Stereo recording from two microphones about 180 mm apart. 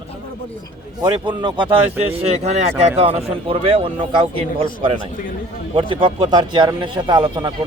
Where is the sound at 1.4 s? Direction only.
25° right (ahead or behind).